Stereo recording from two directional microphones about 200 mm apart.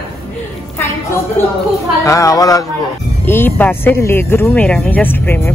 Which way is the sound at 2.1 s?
15° left (ahead or behind).